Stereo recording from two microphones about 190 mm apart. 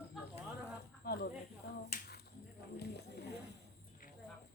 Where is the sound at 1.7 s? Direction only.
55° left (ahead or behind).